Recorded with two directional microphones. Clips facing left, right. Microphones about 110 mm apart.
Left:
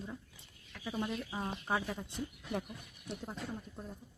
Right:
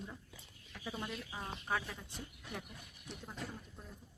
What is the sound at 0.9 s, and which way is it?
Speech, 10° left (ahead or behind).